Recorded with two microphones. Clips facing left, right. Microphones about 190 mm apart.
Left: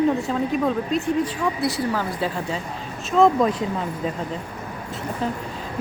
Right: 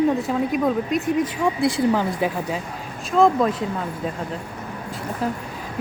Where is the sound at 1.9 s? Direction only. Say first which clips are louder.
Right 3 dB; 15° right (ahead or behind).